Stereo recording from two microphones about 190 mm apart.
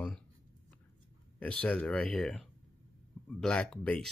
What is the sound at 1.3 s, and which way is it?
Speech, 5° left (ahead or behind).